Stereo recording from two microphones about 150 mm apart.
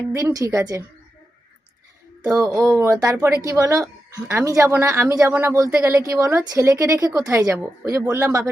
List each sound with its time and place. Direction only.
0.1 s speech: 20° right (ahead or behind)
2.3 s speech: 20° right (ahead or behind)